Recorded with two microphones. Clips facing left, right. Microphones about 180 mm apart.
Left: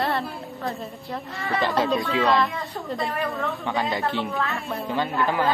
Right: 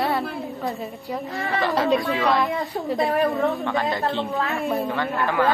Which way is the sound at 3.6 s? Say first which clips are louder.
Right 2 dB; 20° left (ahead or behind).